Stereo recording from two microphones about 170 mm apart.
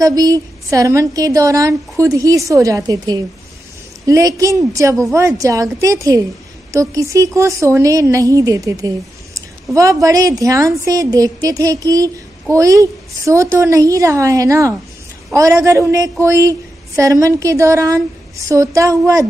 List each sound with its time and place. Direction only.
0.0 s a woman's voice: 20° right (ahead or behind)